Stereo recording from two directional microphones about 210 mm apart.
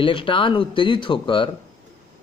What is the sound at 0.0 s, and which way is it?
A man's voice, 25° left (ahead or behind).